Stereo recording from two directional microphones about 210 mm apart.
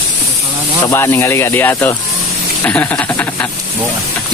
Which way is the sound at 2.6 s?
10° left (ahead or behind).